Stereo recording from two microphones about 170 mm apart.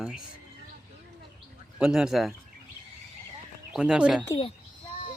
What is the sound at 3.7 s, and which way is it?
Speech, 5° right (ahead or behind).